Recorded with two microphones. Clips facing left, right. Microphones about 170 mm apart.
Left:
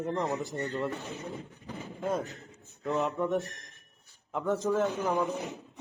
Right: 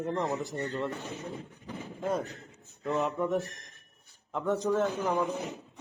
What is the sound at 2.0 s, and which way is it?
A man's voice, centre (ahead or behind).